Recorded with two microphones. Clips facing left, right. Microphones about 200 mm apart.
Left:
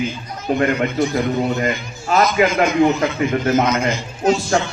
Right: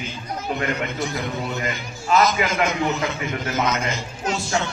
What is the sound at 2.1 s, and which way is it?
A man's voice, 40° left (ahead or behind).